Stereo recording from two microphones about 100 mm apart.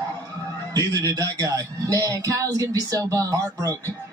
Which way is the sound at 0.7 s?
35° right (ahead or behind).